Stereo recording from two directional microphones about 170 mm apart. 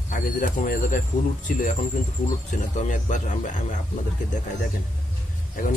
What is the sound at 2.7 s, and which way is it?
Speech, 45° left (ahead or behind).